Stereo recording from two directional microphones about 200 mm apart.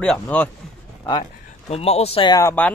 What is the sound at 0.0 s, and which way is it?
Speech, 5° left (ahead or behind).